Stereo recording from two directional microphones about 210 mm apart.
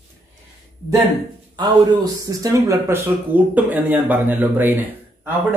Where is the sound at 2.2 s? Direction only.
15° right (ahead or behind).